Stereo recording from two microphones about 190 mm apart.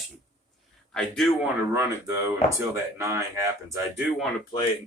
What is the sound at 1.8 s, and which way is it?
Speech, 15° right (ahead or behind).